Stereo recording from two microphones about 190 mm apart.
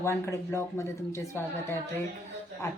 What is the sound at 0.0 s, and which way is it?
Speech, 15° left (ahead or behind).